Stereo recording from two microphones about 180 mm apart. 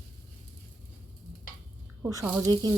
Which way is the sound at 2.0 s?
10° right (ahead or behind).